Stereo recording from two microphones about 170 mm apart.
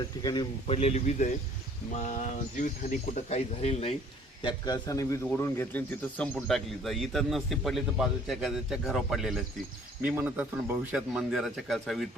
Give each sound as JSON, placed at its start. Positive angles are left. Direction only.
{"t": 0.2, "sound": "a man's voice", "side_deg": 25}
{"t": 0.7, "sound": "a man's voice", "side_deg": 40}
{"t": 4.4, "sound": "a man's voice", "side_deg": 25}